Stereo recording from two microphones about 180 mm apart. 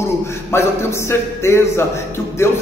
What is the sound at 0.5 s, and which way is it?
Speech, 15° left (ahead or behind).